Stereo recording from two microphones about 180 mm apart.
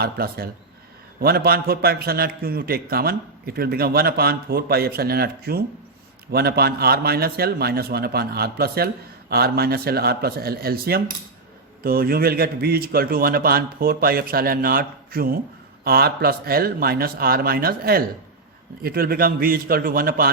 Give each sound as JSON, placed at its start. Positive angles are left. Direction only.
{"t": 0.0, "sound": "a man's voice", "side_deg": -60}